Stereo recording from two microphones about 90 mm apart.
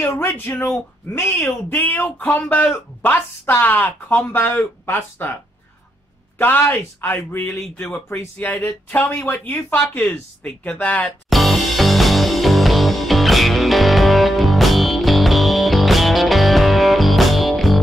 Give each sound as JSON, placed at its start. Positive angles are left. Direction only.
{"t": 0.0, "sound": "speech", "side_deg": 30}
{"t": 7.8, "sound": "speech", "side_deg": 15}
{"t": 11.2, "sound": "music", "side_deg": 0}